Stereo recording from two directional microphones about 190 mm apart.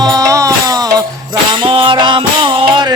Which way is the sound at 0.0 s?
20° right (ahead or behind).